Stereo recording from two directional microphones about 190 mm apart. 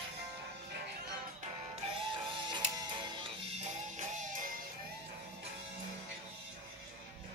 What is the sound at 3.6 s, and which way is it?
Music, 40° right (ahead or behind).